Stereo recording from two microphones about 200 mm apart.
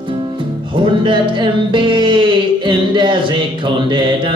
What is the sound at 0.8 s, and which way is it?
Speech, 25° right (ahead or behind).